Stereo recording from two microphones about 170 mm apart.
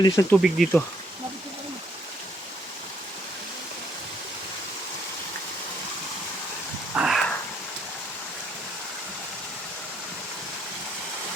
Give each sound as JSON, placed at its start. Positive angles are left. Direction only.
{"t": 0.0, "sound": "speech", "side_deg": 20}
{"t": 0.4, "sound": "speech", "side_deg": 0}
{"t": 6.9, "sound": "a sound", "side_deg": 0}